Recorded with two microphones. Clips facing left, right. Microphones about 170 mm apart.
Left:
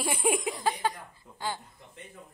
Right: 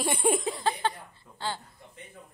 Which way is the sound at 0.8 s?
10° left (ahead or behind).